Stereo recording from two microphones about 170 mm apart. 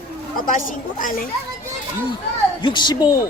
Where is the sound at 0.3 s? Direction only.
50° left (ahead or behind).